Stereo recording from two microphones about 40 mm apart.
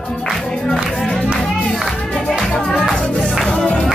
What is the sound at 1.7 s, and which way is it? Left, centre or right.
Music, centre.